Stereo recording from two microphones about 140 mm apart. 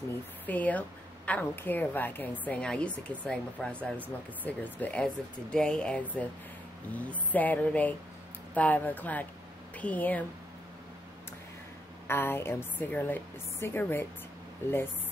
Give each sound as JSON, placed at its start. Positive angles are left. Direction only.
{"t": 0.5, "sound": "a woman's voice", "side_deg": 10}
{"t": 12.1, "sound": "a woman's voice", "side_deg": 15}